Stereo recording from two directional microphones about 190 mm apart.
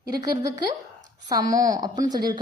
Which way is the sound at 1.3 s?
20° right (ahead or behind).